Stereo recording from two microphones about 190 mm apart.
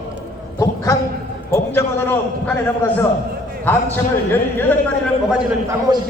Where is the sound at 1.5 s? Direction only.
10° left (ahead or behind).